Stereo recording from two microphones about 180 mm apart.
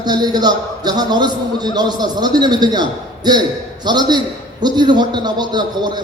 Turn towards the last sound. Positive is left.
turn(degrees=-25)  # may be behind; listen again after turning